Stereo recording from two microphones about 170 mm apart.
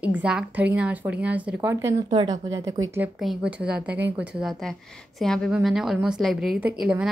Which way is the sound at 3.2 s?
5° right (ahead or behind).